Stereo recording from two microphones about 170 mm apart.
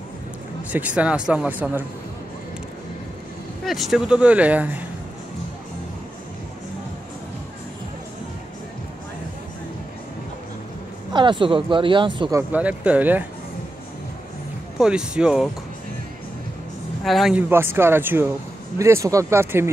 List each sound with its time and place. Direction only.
0.7 s speech: 10° right (ahead or behind)
3.6 s speech: centre (ahead or behind)
11.1 s speech: 30° right (ahead or behind)
12.5 s speech: 10° right (ahead or behind)
14.8 s speech: 5° right (ahead or behind)
17.0 s speech: centre (ahead or behind)